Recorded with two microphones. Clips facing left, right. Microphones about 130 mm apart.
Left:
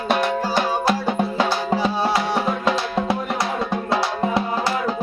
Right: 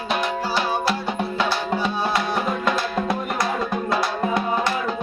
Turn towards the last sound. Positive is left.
turn(degrees=30)  # may be behind; listen again after turning